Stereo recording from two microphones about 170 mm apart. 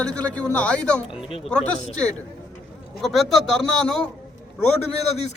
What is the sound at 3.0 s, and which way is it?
Speech, centre (ahead or behind).